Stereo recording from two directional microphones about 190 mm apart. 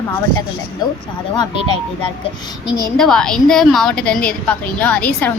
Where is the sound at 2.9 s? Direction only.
5° left (ahead or behind).